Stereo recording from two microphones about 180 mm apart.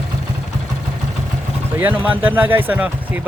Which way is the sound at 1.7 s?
10° right (ahead or behind).